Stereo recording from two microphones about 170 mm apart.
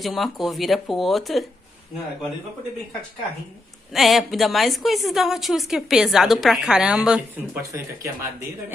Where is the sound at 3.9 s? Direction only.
Centre (ahead or behind).